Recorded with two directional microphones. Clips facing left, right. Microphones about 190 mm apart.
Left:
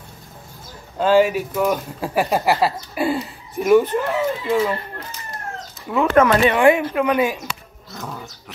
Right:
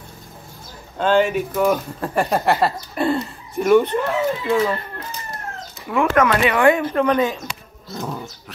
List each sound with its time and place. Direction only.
0.9 s speech: 5° left (ahead or behind)
5.9 s speech: 20° left (ahead or behind)
6.9 s speech: 10° left (ahead or behind)
7.4 s roaring cats: 30° right (ahead or behind)